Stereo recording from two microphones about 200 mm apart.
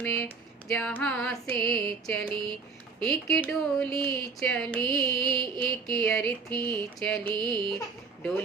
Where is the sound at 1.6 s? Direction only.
25° right (ahead or behind).